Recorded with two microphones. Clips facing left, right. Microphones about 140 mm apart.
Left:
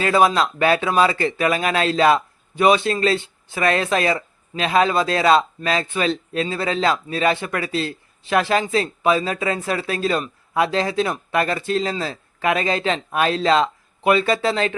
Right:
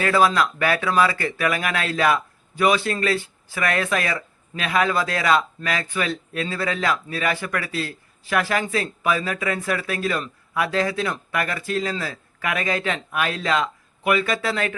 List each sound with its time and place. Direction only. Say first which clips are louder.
0.0 s speech: left 2 dB; 20° left (ahead or behind)